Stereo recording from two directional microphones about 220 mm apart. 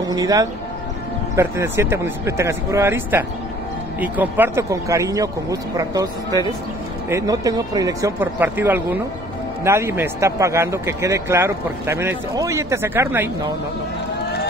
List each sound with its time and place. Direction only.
0.1 s speech: 15° right (ahead or behind)
7.1 s speech: 15° right (ahead or behind)